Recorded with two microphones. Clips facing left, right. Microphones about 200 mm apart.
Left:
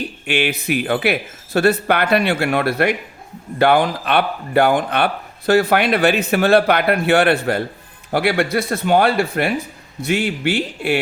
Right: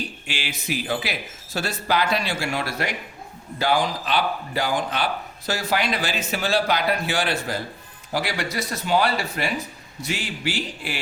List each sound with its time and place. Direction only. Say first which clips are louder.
0.3 s speech: left 12 dB; 60° left (ahead or behind)